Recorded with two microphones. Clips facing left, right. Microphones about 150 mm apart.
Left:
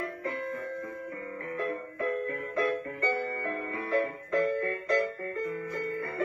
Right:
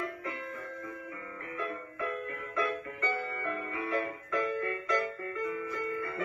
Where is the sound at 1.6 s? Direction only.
45° left (ahead or behind).